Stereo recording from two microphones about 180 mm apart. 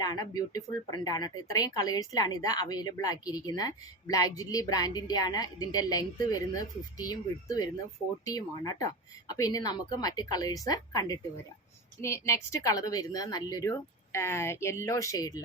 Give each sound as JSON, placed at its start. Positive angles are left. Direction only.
{"t": 0.0, "sound": "speech", "side_deg": 20}